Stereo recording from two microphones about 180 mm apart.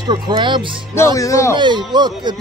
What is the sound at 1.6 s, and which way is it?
Speech, 25° right (ahead or behind).